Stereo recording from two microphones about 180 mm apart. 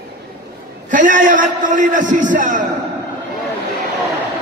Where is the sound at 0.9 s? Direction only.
45° right (ahead or behind).